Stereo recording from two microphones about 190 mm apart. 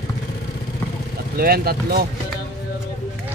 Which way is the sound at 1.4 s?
55° right (ahead or behind).